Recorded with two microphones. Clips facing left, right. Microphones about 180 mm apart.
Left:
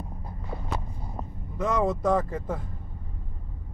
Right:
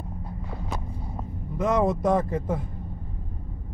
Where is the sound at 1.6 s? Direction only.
20° right (ahead or behind).